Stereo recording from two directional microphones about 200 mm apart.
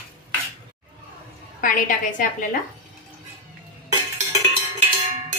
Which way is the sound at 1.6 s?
40° left (ahead or behind).